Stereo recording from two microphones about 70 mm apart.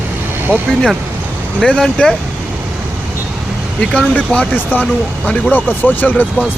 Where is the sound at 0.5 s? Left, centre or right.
Centre.